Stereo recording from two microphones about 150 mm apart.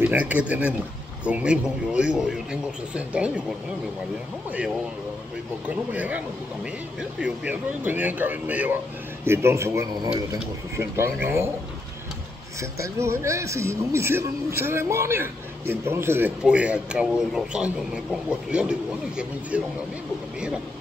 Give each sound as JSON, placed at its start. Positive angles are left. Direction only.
{"t": 0.0, "sound": "a man's voice", "side_deg": -10}
{"t": 5.7, "sound": "a man's voice", "side_deg": -10}
{"t": 12.5, "sound": "a man's voice", "side_deg": -20}